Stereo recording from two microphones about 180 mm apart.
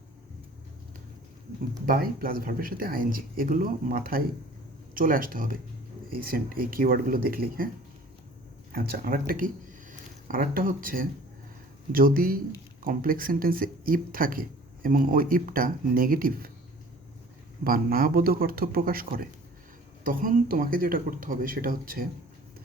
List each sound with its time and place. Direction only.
1.9 s speech: 55° right (ahead or behind)
8.7 s a man's voice: 55° right (ahead or behind)
17.6 s a man's voice: 55° right (ahead or behind)